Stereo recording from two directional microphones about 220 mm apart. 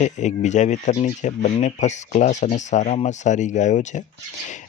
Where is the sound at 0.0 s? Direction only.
35° left (ahead or behind).